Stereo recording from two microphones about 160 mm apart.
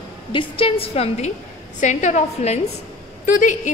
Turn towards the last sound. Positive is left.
turn(degrees=55)  # may be behind; listen again after turning